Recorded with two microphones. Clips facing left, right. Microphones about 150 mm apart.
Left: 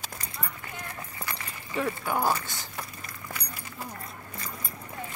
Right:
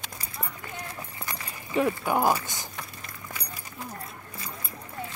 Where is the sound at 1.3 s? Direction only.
15° right (ahead or behind).